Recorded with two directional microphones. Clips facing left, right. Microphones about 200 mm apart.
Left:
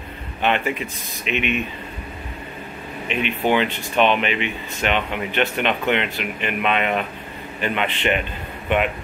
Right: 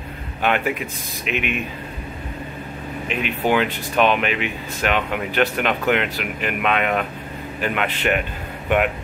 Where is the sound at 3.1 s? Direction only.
5° right (ahead or behind).